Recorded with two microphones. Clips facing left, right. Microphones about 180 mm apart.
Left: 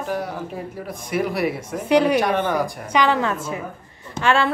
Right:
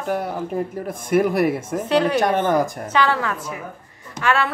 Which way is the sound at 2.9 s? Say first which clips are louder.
Left 3 dB; 15° left (ahead or behind).